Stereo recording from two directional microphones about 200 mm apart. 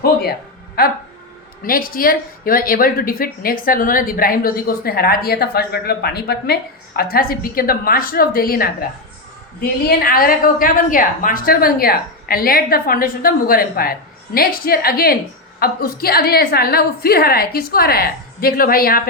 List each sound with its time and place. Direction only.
0.0 s a woman's voice: 50° left (ahead or behind)